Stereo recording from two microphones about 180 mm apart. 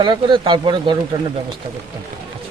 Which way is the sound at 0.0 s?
25° right (ahead or behind).